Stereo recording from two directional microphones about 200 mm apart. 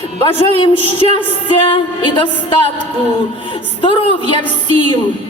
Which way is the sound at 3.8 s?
25° left (ahead or behind).